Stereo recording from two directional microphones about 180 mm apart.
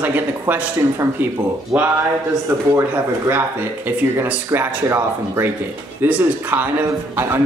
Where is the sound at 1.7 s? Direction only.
10° right (ahead or behind).